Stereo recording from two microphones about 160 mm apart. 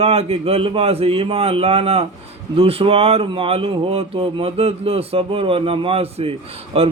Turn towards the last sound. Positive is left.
turn(degrees=-35)  # may be behind; listen again after turning